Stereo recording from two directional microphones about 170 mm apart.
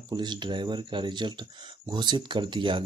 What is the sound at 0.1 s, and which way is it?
Speech, 25° right (ahead or behind).